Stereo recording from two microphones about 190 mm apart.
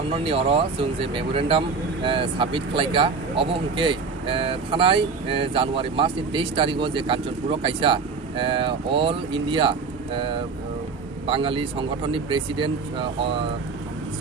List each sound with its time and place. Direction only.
0.1 s speech: 30° right (ahead or behind)